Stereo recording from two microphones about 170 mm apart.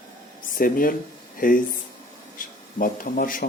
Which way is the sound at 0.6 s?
55° left (ahead or behind).